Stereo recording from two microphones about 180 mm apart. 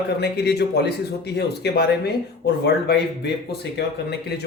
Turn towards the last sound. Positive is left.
turn(degrees=65)  # may be behind; listen again after turning